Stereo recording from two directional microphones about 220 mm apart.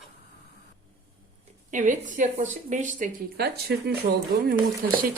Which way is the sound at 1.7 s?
35° right (ahead or behind).